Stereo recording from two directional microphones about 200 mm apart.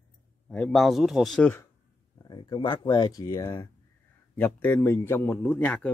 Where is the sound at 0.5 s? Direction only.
5° left (ahead or behind).